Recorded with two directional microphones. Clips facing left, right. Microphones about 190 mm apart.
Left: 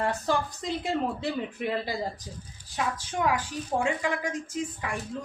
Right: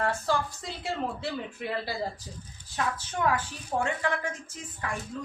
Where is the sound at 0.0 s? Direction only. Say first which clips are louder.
Left 1 dB; 20° left (ahead or behind).